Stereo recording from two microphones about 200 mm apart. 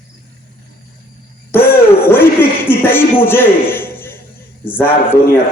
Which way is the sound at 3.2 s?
10° left (ahead or behind).